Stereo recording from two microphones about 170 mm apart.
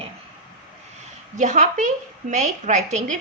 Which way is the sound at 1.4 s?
45° right (ahead or behind).